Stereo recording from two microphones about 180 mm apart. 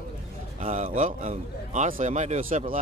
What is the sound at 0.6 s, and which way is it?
A man's voice, 40° right (ahead or behind).